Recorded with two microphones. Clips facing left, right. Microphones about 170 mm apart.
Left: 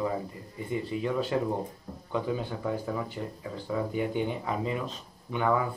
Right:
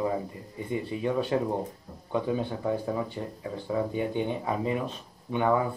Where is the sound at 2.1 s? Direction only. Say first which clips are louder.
Right 2 dB; 20° right (ahead or behind).